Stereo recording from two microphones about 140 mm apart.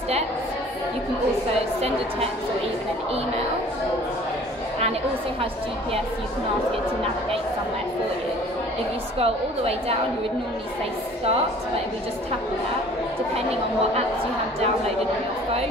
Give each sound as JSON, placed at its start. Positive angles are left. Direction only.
{"t": 9.2, "sound": "a woman's voice", "side_deg": -45}